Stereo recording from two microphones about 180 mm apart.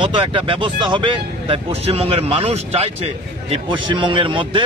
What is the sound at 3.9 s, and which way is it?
Speech, 30° right (ahead or behind).